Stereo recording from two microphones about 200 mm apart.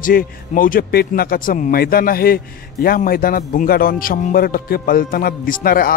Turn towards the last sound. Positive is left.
turn(degrees=45)  # may be behind; listen again after turning